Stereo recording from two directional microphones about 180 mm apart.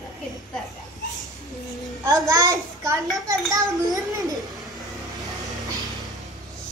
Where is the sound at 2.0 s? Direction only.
20° right (ahead or behind).